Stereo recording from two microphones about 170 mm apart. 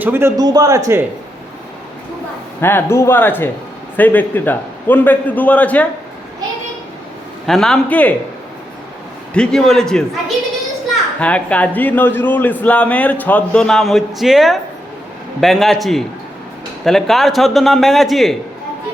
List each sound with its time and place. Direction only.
0.0 s a man's voice: 15° right (ahead or behind)
2.6 s speech: 15° left (ahead or behind)
7.4 s a man's voice: centre (ahead or behind)
9.3 s a man's voice: 5° left (ahead or behind)